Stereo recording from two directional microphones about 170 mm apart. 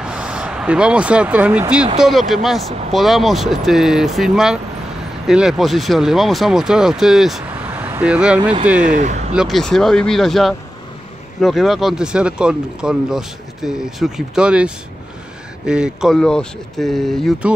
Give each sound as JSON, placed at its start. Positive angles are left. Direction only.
{"t": 0.0, "sound": "speech", "side_deg": -5}
{"t": 8.8, "sound": "speech", "side_deg": -45}
{"t": 9.3, "sound": "speech", "side_deg": 0}